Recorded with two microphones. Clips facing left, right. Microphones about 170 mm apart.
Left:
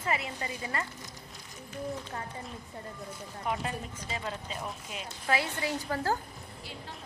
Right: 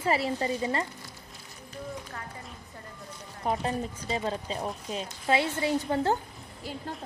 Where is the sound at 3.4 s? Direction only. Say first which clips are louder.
Right 5 dB; 35° right (ahead or behind).